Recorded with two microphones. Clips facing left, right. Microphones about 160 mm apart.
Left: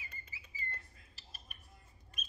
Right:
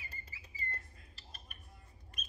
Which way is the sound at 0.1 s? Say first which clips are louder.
Even; 35° right (ahead or behind).